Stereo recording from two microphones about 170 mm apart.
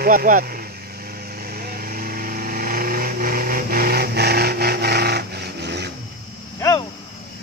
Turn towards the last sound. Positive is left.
turn(degrees=20)  # may be behind; listen again after turning